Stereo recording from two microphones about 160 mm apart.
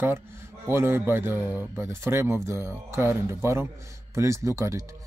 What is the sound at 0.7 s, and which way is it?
Speech, 15° right (ahead or behind).